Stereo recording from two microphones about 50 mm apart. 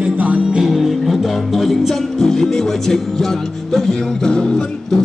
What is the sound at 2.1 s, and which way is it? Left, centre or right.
Music, centre.